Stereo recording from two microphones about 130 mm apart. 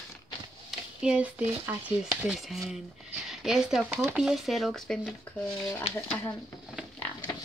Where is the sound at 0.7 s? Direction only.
10° right (ahead or behind).